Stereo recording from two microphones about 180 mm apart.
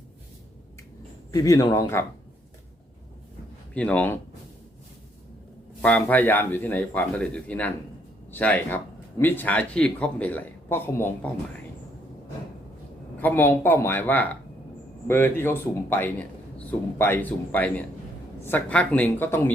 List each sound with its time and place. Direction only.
1.3 s speech: 20° left (ahead or behind)
3.8 s speech: 5° left (ahead or behind)
5.8 s speech: 10° left (ahead or behind)
13.2 s speech: 10° left (ahead or behind)